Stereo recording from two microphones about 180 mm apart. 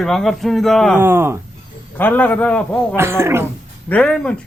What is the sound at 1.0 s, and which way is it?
Speech, 15° right (ahead or behind).